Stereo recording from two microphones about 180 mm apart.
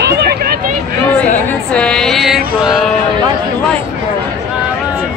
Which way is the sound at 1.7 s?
5° left (ahead or behind).